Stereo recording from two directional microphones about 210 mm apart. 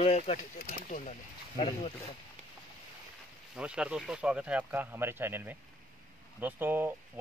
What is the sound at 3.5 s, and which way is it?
Speech, 5° right (ahead or behind).